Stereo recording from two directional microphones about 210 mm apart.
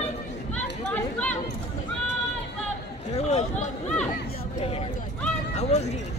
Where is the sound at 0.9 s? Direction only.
5° left (ahead or behind).